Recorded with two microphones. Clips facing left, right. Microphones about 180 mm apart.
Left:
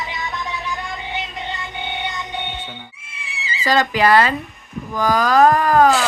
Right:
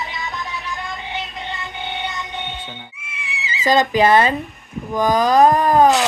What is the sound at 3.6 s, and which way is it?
Speech, 20° right (ahead or behind).